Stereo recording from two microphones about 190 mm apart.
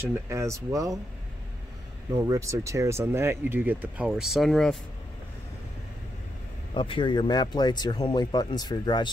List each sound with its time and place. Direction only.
0.0 s speech: 15° right (ahead or behind)
2.2 s speech: 15° right (ahead or behind); by 4.7 s centre (ahead or behind)
6.7 s speech: 25° left (ahead or behind)